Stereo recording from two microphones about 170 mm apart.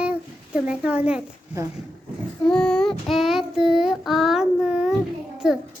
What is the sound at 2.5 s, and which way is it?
Child singing, 5° left (ahead or behind).